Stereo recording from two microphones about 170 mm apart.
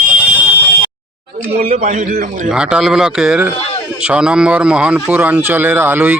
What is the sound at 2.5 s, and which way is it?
Speech, 5° right (ahead or behind).